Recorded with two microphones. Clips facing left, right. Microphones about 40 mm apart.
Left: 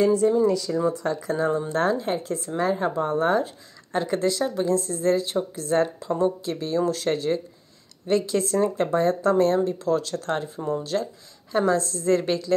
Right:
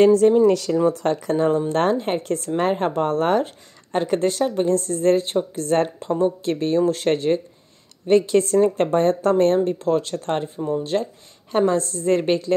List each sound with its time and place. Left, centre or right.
0.0 s speech: right
0.8 s a woman's voice: right